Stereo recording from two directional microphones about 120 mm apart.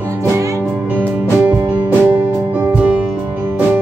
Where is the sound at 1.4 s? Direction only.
10° right (ahead or behind).